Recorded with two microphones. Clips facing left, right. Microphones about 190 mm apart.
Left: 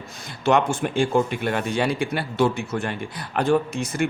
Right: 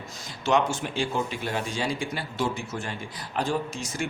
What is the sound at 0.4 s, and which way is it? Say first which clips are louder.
Speech: left 4 dB; 55° left (ahead or behind).